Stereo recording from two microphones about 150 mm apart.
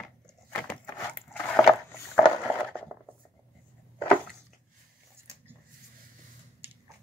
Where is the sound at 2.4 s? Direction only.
10° left (ahead or behind).